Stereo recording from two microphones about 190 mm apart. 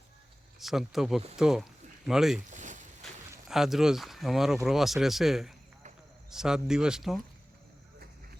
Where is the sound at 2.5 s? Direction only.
40° right (ahead or behind).